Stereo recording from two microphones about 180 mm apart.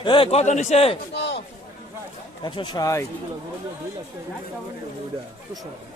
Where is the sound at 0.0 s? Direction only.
25° left (ahead or behind).